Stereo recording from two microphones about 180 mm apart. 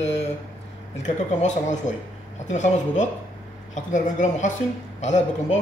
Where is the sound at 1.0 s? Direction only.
40° left (ahead or behind).